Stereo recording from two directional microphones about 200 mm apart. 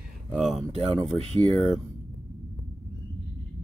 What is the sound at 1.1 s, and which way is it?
Speech, 30° right (ahead or behind).